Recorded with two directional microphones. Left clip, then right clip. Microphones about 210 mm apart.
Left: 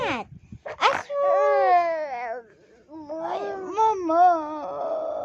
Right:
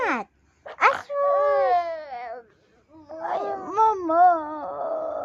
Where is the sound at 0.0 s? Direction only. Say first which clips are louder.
Right 2 dB; 5° right (ahead or behind).